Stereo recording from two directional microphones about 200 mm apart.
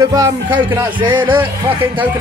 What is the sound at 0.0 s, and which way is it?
Music, 20° right (ahead or behind).